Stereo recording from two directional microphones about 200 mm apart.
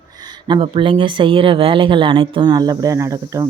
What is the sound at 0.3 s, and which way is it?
Speech, 25° right (ahead or behind).